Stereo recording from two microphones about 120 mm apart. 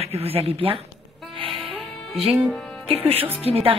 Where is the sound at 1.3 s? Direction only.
50° right (ahead or behind).